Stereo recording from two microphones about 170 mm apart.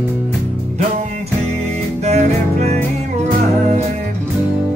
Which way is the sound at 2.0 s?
40° right (ahead or behind).